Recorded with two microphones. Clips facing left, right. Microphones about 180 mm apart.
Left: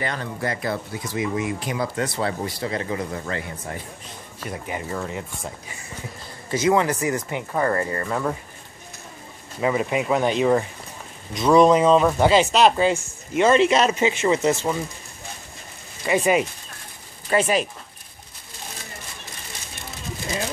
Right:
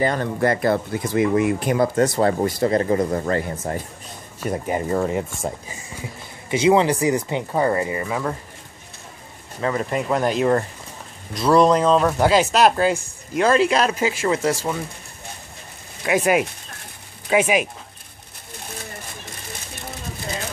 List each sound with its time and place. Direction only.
0.0 s speech: 50° right (ahead or behind)
6.6 s speech: 25° right (ahead or behind); by 8.4 s centre (ahead or behind)
9.6 s speech: 10° left (ahead or behind)
16.0 s speech: 5° right (ahead or behind)